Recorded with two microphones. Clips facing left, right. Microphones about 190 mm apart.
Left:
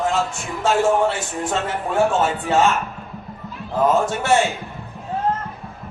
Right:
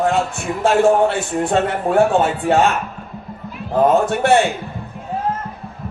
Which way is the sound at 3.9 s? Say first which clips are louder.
Right 3 dB; 60° right (ahead or behind).